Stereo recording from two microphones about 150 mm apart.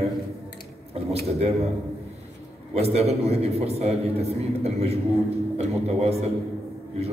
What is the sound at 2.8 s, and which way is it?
A man's voice, 45° right (ahead or behind).